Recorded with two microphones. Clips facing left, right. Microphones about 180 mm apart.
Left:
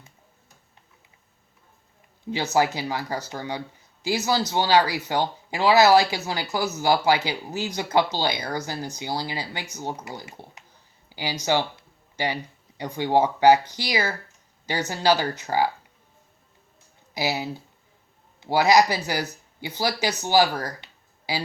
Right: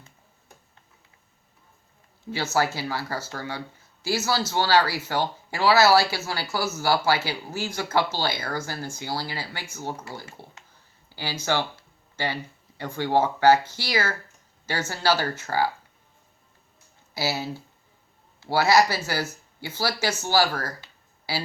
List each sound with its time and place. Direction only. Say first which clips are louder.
2.3 s speech: left 3 dB; 15° left (ahead or behind)
17.2 s speech: left 1 dB; 15° left (ahead or behind)